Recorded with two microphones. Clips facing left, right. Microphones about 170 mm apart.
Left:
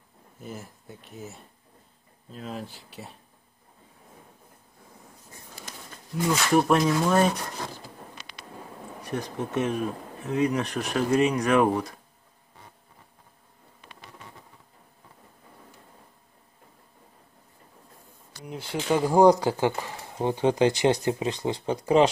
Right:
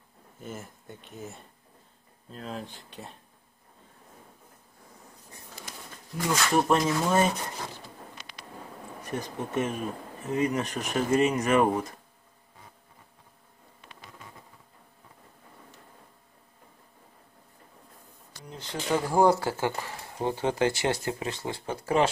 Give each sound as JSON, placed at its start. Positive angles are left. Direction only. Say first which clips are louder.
{"t": 0.4, "sound": "speech", "louder": "left 1 dB", "side_deg": 0}
{"t": 6.5, "sound": "speech", "louder": "left 3 dB", "side_deg": 0}
{"t": 9.1, "sound": "speech", "louder": "left 2 dB", "side_deg": 0}
{"t": 18.4, "sound": "speech", "louder": "left 4 dB", "side_deg": 10}